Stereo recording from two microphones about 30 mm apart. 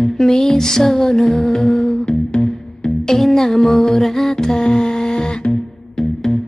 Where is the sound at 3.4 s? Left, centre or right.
Centre.